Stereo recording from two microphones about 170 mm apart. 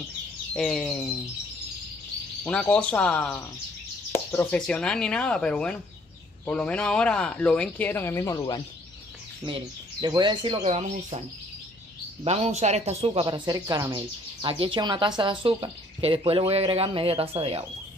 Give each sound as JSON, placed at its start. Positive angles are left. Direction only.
{"t": 0.6, "sound": "speech", "side_deg": 5}
{"t": 2.4, "sound": "speech", "side_deg": 10}
{"t": 10.0, "sound": "speech", "side_deg": -25}
{"t": 12.3, "sound": "speech", "side_deg": -40}